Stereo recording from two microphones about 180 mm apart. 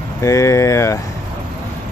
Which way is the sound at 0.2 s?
15° left (ahead or behind).